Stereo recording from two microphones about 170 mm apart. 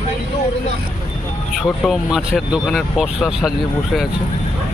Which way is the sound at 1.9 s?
Centre (ahead or behind).